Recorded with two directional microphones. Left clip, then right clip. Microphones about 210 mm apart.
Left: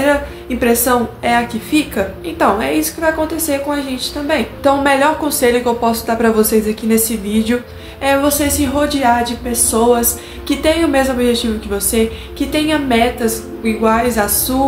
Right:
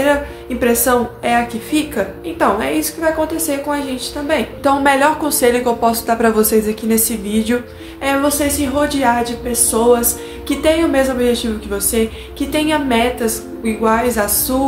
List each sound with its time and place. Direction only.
0.0 s a woman's voice: 10° right (ahead or behind)